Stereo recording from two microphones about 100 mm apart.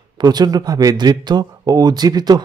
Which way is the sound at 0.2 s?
45° right (ahead or behind).